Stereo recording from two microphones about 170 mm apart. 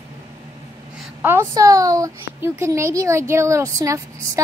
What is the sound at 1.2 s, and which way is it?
A woman's voice, 15° right (ahead or behind).